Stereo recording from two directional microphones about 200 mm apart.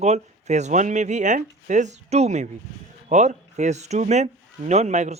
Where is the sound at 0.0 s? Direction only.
35° right (ahead or behind).